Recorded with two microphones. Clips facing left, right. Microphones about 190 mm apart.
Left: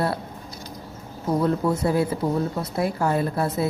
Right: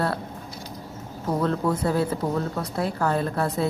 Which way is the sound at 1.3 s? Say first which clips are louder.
Left 2 dB; 10° left (ahead or behind).